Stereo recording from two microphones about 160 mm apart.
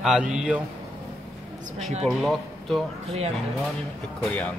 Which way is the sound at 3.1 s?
40° right (ahead or behind).